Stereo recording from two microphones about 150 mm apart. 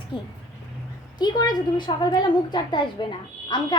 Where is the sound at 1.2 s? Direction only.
25° left (ahead or behind).